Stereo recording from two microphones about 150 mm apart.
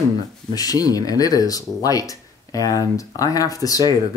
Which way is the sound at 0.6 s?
25° left (ahead or behind).